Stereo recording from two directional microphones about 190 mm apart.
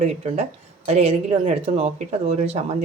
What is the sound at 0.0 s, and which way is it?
A woman's voice, 35° right (ahead or behind).